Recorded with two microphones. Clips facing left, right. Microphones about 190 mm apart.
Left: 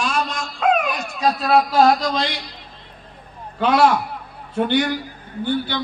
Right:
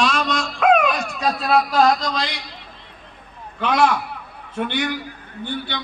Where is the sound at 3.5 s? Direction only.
30° left (ahead or behind).